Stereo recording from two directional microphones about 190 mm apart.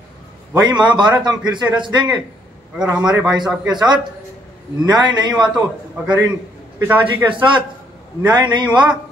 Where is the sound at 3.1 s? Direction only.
5° right (ahead or behind).